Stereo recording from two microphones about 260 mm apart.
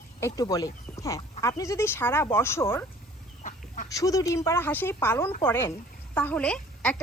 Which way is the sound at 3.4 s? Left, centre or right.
Left.